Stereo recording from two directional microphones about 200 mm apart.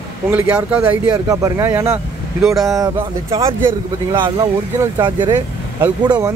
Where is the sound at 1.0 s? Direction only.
20° right (ahead or behind).